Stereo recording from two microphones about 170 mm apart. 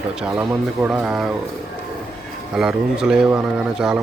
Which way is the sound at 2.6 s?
5° right (ahead or behind).